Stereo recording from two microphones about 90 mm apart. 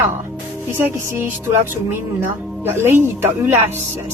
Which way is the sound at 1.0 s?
25° right (ahead or behind).